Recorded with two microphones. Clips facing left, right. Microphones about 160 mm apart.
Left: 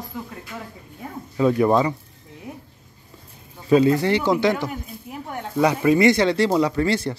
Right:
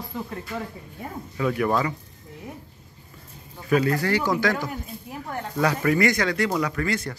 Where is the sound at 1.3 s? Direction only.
25° left (ahead or behind).